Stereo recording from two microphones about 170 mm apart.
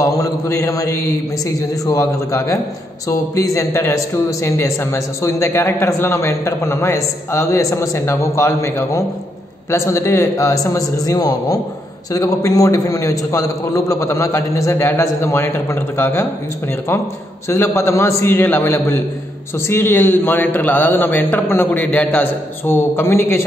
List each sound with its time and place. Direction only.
0.0 s a man's voice: 20° left (ahead or behind)
17.5 s a man's voice: 15° left (ahead or behind)